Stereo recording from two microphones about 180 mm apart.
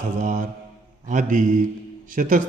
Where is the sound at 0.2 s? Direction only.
40° right (ahead or behind).